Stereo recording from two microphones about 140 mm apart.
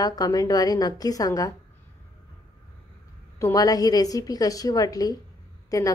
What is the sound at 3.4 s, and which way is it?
A woman's voice, 25° left (ahead or behind).